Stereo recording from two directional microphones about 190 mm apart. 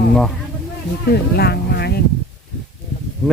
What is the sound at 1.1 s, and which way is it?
Speech, 60° left (ahead or behind).